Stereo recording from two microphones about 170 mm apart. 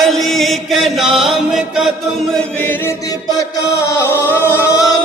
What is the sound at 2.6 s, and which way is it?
Chant, 10° left (ahead or behind).